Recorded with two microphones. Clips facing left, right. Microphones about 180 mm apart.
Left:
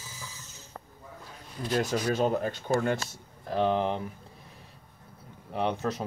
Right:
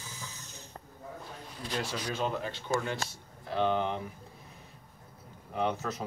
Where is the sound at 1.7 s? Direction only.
45° left (ahead or behind).